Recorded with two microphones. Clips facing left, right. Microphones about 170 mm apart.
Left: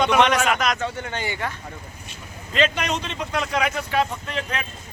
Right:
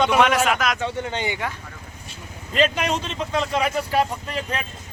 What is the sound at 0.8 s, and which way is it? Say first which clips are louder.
Speech: right 2 dB; 15° right (ahead or behind).